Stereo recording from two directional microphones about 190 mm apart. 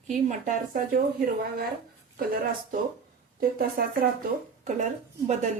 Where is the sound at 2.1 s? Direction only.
50° right (ahead or behind).